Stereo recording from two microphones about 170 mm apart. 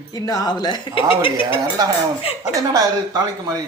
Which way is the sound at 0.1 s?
20° left (ahead or behind).